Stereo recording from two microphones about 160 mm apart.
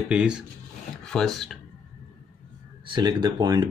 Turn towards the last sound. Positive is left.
turn(degrees=-25)  # may be behind; listen again after turning